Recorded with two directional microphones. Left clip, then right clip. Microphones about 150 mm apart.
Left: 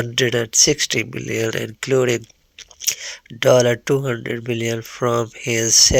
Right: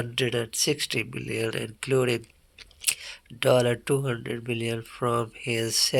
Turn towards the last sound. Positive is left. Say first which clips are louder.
# left 8 dB
turn(degrees=25)  # may be behind; listen again after turning